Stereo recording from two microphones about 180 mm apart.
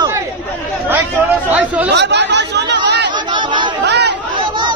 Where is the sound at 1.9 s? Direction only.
70° right (ahead or behind).